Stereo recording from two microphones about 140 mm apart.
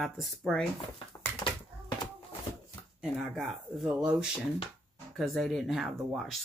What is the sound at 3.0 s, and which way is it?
Speech, centre (ahead or behind).